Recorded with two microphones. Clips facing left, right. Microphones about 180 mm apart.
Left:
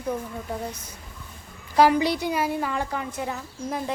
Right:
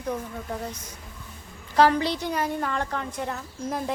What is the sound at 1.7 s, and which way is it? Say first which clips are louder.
A woman's voice: left 1 dB; 10° left (ahead or behind).